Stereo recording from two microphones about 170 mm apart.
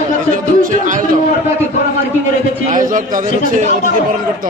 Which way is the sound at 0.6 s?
50° right (ahead or behind).